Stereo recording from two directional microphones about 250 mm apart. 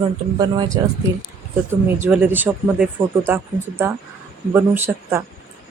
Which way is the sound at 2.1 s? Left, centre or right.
Centre.